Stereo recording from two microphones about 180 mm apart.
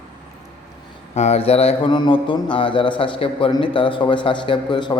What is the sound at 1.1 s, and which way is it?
Speech, 35° left (ahead or behind).